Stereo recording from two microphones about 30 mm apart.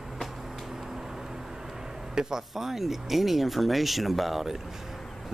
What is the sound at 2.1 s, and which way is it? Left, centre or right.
Speech, centre.